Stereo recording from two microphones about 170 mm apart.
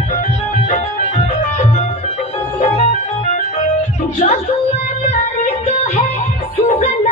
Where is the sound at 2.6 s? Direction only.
45° left (ahead or behind).